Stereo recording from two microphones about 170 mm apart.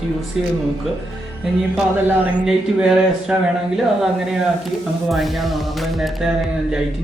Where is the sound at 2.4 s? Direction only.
5° right (ahead or behind).